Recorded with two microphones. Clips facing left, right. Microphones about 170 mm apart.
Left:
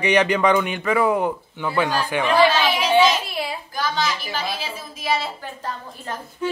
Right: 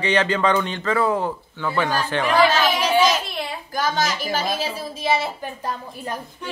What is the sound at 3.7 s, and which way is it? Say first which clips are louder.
A woman's voice: right 2 dB; 45° right (ahead or behind).